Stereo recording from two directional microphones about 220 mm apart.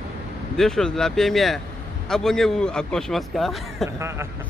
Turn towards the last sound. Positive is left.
turn(degrees=-10)  # may be behind; listen again after turning